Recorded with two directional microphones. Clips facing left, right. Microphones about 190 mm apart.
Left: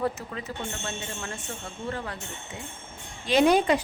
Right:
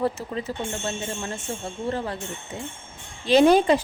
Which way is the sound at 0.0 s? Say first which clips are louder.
Right 4 dB; 30° right (ahead or behind).